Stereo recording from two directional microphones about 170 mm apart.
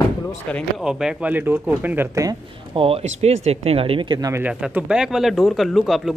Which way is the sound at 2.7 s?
35° right (ahead or behind).